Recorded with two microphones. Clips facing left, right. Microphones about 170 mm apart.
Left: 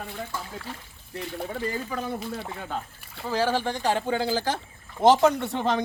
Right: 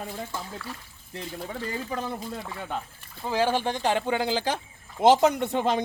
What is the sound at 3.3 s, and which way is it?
A man's voice, 15° right (ahead or behind).